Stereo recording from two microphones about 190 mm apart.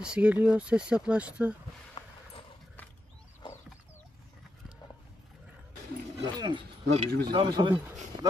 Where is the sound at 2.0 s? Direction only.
25° left (ahead or behind).